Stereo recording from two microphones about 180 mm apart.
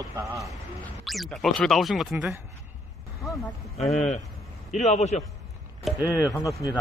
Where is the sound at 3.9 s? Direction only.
40° left (ahead or behind).